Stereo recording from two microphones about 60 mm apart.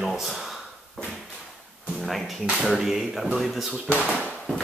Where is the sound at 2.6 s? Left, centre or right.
Centre.